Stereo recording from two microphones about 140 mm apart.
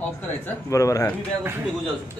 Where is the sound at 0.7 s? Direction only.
25° left (ahead or behind).